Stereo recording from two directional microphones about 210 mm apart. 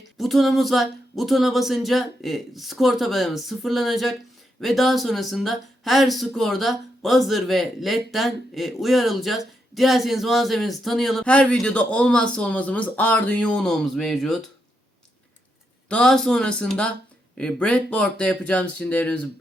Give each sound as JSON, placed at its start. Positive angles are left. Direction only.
{"t": 0.2, "sound": "speech", "side_deg": 0}
{"t": 15.9, "sound": "speech", "side_deg": 5}